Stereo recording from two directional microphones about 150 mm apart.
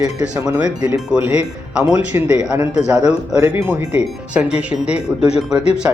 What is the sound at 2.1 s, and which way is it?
Speech, 15° right (ahead or behind).